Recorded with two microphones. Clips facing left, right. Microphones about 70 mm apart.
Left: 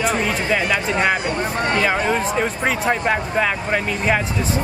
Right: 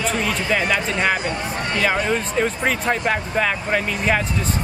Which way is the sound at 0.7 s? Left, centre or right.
Centre.